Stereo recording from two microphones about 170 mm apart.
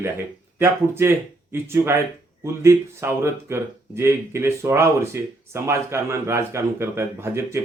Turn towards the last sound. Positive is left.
turn(degrees=-15)  # may be behind; listen again after turning